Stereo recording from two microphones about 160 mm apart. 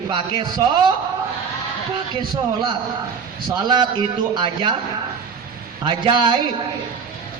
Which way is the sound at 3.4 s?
25° right (ahead or behind).